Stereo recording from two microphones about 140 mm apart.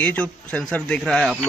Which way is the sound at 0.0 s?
10° left (ahead or behind).